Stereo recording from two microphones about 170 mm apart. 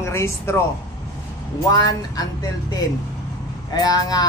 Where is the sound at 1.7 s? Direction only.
20° left (ahead or behind).